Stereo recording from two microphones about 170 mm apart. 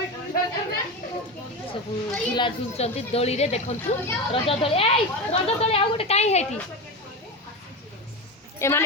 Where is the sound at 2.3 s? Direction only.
30° left (ahead or behind).